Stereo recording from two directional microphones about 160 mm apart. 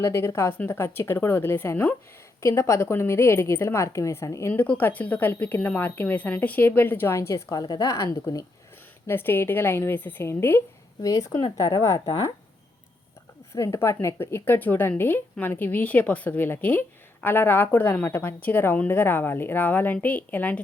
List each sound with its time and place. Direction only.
0.0 s a woman's voice: 15° left (ahead or behind)
13.5 s a woman's voice: 15° left (ahead or behind)